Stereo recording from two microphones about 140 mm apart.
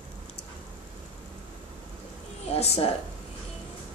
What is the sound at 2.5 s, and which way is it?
Speech, 50° left (ahead or behind).